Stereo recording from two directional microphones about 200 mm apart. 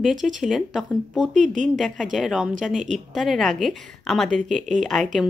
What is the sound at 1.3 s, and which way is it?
Speech, 40° right (ahead or behind).